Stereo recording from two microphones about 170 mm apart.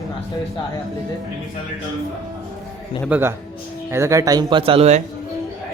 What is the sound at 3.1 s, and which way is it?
Speech, 15° right (ahead or behind).